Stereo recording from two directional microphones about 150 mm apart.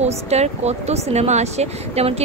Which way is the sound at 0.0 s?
45° right (ahead or behind).